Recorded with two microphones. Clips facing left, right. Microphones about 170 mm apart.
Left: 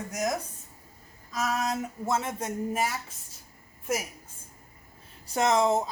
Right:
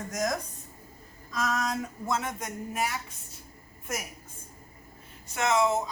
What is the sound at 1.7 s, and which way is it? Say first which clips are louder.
Speech: left 2 dB; 25° left (ahead or behind).